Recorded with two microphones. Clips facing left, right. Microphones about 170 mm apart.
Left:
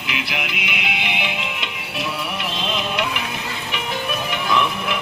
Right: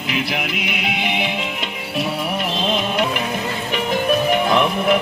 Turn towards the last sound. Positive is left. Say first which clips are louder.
# right 5 dB
turn(degrees=-45)  # may be behind; listen again after turning